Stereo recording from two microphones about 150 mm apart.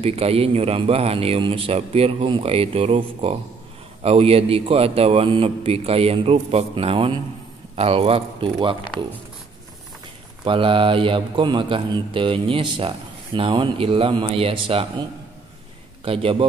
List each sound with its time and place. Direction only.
0.0 s speech: 40° right (ahead or behind)
10.4 s a man's voice: 35° right (ahead or behind)